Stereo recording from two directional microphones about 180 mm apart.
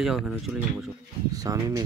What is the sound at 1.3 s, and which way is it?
Speech, 20° right (ahead or behind).